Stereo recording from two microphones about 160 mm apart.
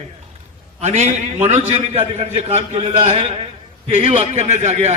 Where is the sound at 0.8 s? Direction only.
45° right (ahead or behind).